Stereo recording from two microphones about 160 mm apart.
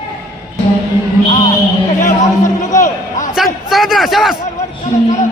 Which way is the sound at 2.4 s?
50° left (ahead or behind).